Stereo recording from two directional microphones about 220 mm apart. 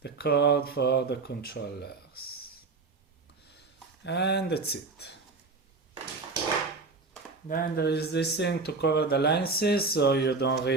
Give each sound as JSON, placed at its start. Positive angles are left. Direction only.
{"t": 0.0, "sound": "speech", "side_deg": 45}
{"t": 4.0, "sound": "speech", "side_deg": 50}
{"t": 7.4, "sound": "speech", "side_deg": 40}